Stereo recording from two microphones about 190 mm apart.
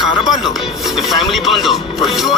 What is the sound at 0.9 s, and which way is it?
Speech, centre (ahead or behind).